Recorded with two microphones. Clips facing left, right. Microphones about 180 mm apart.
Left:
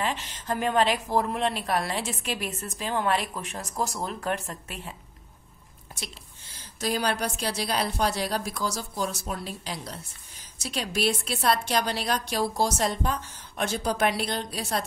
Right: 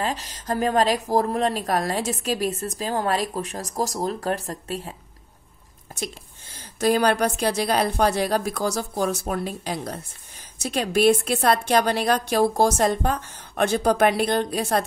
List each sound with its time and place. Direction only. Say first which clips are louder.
0.0 s speech: right 3 dB; 40° right (ahead or behind)
5.9 s a woman's voice: right 10 dB; 50° right (ahead or behind)